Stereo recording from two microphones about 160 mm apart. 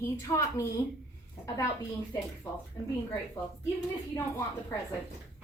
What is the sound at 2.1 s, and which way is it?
Speech, 20° left (ahead or behind).